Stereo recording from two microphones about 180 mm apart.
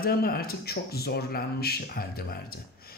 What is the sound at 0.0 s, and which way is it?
A man's voice, 55° left (ahead or behind).